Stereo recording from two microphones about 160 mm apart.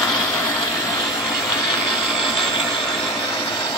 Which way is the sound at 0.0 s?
25° left (ahead or behind).